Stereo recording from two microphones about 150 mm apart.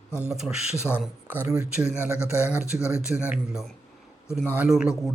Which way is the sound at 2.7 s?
20° left (ahead or behind).